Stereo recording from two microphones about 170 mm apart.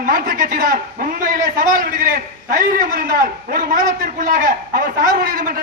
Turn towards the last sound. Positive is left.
turn(degrees=-55)  # may be behind; listen again after turning